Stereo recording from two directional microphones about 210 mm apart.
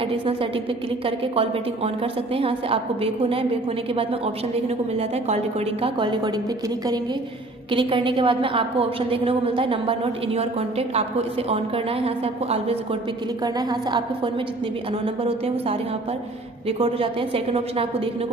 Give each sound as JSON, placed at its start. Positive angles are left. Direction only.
{"t": 1.0, "sound": "a woman's voice", "side_deg": -25}
{"t": 4.6, "sound": "a woman's voice", "side_deg": -30}
{"t": 7.7, "sound": "a woman's voice", "side_deg": -25}
{"t": 13.4, "sound": "a woman's voice", "side_deg": -20}